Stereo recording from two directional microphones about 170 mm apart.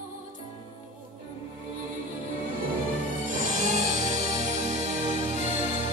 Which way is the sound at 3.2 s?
45° right (ahead or behind).